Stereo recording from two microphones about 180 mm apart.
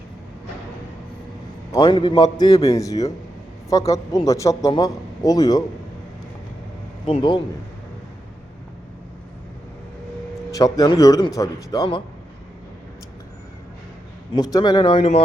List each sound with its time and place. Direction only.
1.7 s a man's voice: 25° left (ahead or behind)
7.1 s a man's voice: 25° left (ahead or behind)
10.5 s a man's voice: 20° left (ahead or behind)
14.3 s a man's voice: 25° left (ahead or behind)